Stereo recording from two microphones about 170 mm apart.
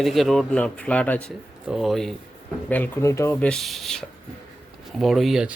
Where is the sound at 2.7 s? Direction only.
15° left (ahead or behind).